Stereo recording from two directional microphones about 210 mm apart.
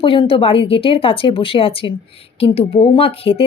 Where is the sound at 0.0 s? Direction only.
25° left (ahead or behind).